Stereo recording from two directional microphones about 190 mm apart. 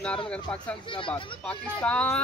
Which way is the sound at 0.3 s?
5° left (ahead or behind).